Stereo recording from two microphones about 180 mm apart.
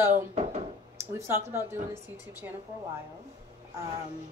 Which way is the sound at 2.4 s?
15° right (ahead or behind).